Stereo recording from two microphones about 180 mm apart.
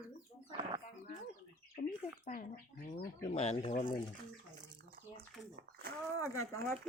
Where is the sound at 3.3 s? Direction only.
35° left (ahead or behind).